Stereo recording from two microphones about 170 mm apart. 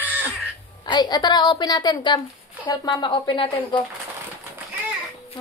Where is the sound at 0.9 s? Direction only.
25° left (ahead or behind).